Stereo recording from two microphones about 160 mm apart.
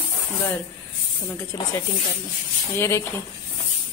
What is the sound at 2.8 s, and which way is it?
Speech, 15° left (ahead or behind).